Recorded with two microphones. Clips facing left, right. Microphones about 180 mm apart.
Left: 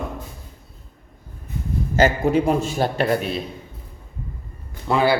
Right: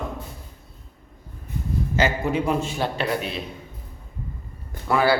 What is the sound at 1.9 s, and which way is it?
A man's voice, 45° left (ahead or behind).